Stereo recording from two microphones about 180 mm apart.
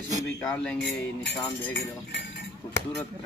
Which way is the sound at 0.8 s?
75° left (ahead or behind).